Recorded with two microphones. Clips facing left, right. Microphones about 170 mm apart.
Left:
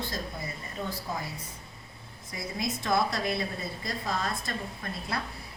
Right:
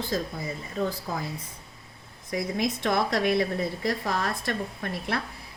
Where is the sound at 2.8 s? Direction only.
70° right (ahead or behind).